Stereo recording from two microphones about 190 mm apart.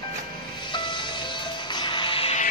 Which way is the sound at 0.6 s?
25° left (ahead or behind).